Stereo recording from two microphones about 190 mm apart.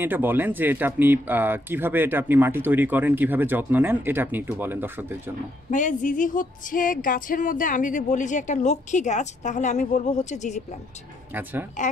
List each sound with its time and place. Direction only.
0.0 s speech: 10° right (ahead or behind)
5.7 s music: 40° left (ahead or behind)